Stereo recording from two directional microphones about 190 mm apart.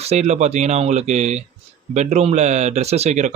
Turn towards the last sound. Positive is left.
turn(degrees=-35)  # may be behind; listen again after turning